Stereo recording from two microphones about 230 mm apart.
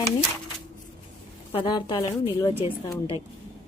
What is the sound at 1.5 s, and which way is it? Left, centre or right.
Speech, centre.